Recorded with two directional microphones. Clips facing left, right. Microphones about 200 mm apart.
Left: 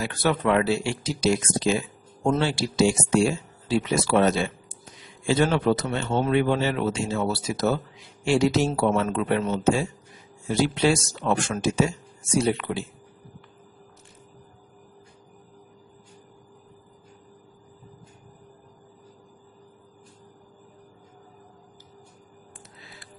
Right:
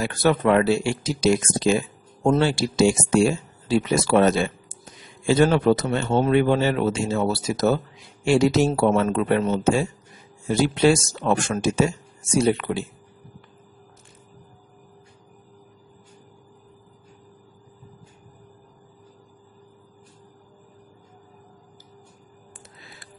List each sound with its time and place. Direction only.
0.0 s speech: 45° right (ahead or behind)